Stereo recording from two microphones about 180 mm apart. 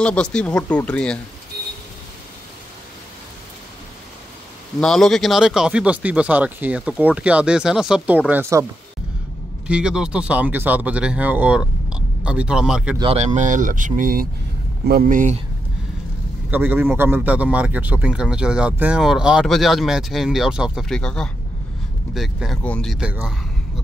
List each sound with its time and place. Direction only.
0.0 s a man's voice: 5° left (ahead or behind)
4.7 s a man's voice: 5° left (ahead or behind)
8.3 s speech: 15° right (ahead or behind)
9.7 s speech: 5° right (ahead or behind)
13.0 s speech: 35° right (ahead or behind)
16.4 s a man's voice: 10° right (ahead or behind)